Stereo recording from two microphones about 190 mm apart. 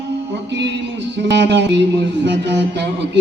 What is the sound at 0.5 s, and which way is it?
Music, 65° right (ahead or behind).